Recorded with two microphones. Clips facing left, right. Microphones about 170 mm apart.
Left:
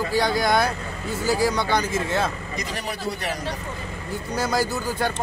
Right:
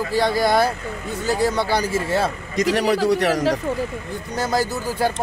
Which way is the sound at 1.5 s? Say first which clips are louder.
Right 2 dB; 30° right (ahead or behind).